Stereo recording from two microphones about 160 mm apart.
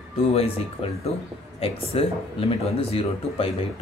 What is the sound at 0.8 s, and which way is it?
Speech, 40° left (ahead or behind).